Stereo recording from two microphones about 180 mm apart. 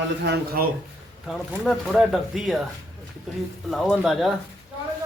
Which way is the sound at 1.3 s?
Centre (ahead or behind).